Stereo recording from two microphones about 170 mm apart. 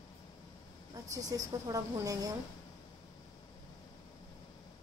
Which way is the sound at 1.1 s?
20° right (ahead or behind).